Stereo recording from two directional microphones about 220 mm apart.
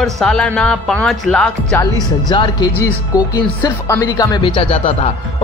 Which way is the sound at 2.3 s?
20° left (ahead or behind).